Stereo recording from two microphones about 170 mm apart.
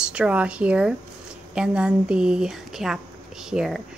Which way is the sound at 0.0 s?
5° right (ahead or behind).